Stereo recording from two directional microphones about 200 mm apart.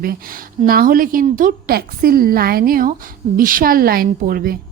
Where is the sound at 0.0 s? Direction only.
45° right (ahead or behind).